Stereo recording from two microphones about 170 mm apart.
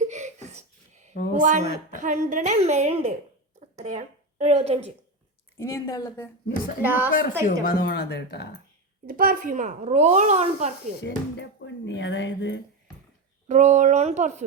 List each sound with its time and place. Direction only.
0.1 s a sound: 45° right (ahead or behind)
1.3 s a woman's voice: 45° right (ahead or behind)
3.6 s a sound: 40° right (ahead or behind)
5.5 s a woman's voice: 15° left (ahead or behind)
6.8 s a woman's voice: 10° right (ahead or behind)
7.4 s a woman's voice: 60° left (ahead or behind); by 8.4 s 75° left (ahead or behind)
9.0 s a woman's voice: 55° right (ahead or behind); by 10.9 s 40° right (ahead or behind)
11.0 s speech: 90° left
13.5 s a woman's voice: 45° right (ahead or behind)